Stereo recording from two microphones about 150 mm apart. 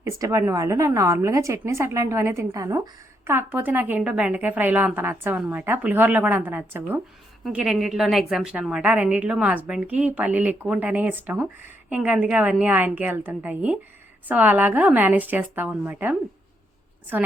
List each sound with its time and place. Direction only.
0.0 s a woman's voice: 20° right (ahead or behind)
7.4 s a woman's voice: 5° right (ahead or behind)